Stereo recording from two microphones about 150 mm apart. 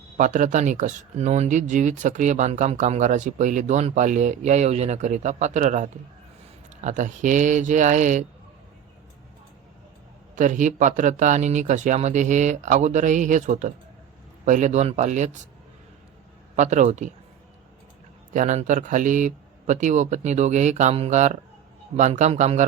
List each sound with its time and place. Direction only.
0.2 s speech: 55° right (ahead or behind)
10.3 s speech: 55° right (ahead or behind)
16.6 s speech: 50° right (ahead or behind)
18.3 s speech: 55° right (ahead or behind)